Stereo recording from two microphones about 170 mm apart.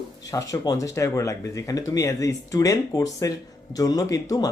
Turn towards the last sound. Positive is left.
turn(degrees=20)  # may be behind; listen again after turning